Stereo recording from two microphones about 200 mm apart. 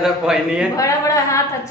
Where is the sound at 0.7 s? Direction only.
15° left (ahead or behind).